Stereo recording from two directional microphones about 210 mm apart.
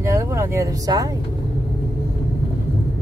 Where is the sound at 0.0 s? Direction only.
15° right (ahead or behind).